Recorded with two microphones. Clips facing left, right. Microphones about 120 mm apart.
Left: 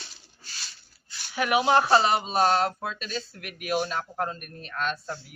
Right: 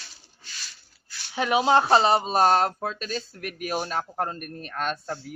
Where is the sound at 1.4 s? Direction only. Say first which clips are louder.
Right 1 dB; 25° right (ahead or behind).